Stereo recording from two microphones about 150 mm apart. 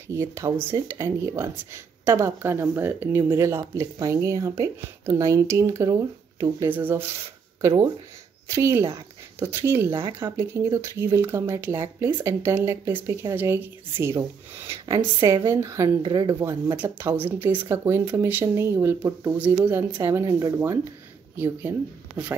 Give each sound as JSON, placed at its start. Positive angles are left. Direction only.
{"t": 0.1, "sound": "speech", "side_deg": -20}
{"t": 6.7, "sound": "speech", "side_deg": -10}
{"t": 7.6, "sound": "speech", "side_deg": -30}
{"t": 8.5, "sound": "speech", "side_deg": -20}